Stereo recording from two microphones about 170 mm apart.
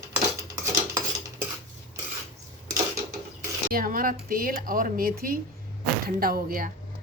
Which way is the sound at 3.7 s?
55° right (ahead or behind).